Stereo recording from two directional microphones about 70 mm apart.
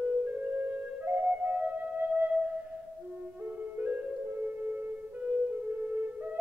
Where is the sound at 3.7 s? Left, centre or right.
Right.